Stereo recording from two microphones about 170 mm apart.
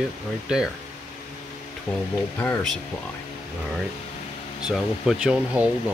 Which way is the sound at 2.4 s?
15° left (ahead or behind).